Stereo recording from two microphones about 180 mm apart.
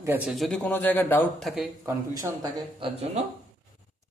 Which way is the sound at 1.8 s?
20° right (ahead or behind).